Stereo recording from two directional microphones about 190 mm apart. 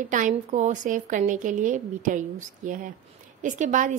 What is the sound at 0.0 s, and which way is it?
A woman's voice, 40° right (ahead or behind).